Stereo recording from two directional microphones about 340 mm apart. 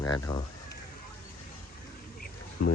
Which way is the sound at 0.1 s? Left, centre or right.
Centre.